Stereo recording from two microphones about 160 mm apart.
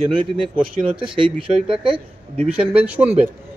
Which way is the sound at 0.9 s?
30° right (ahead or behind).